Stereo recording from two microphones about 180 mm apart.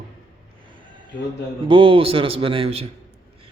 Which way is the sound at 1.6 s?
30° right (ahead or behind).